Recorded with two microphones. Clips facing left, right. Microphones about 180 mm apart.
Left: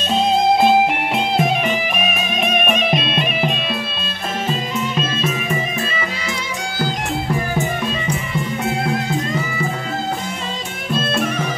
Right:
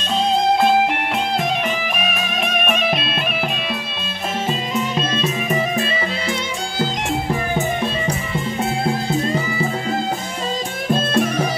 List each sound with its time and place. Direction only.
2.4 s music: centre (ahead or behind)
10.9 s music: 40° right (ahead or behind)